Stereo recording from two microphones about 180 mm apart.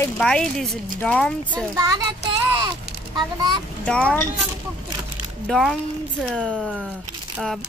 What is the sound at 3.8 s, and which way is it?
Speech, 5° left (ahead or behind).